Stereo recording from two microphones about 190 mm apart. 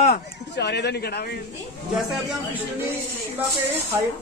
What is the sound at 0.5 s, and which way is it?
Speech, 60° left (ahead or behind).